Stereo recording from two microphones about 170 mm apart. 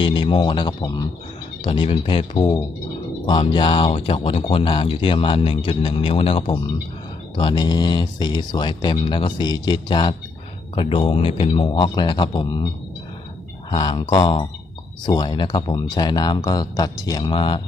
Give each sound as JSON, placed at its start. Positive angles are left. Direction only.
{"t": 0.0, "sound": "a man's voice", "side_deg": 30}
{"t": 13.7, "sound": "speech", "side_deg": 30}